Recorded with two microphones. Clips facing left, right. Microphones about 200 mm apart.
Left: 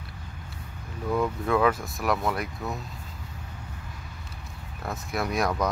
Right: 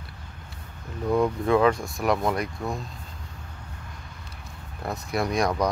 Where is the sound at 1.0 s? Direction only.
15° right (ahead or behind).